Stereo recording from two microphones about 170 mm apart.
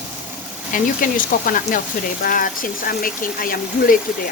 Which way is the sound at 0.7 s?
55° left (ahead or behind).